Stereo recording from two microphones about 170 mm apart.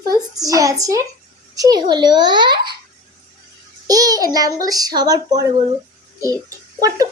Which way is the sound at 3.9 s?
20° right (ahead or behind).